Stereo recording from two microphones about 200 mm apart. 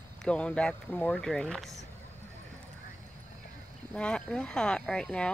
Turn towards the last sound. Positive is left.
turn(degrees=5)  # may be behind; listen again after turning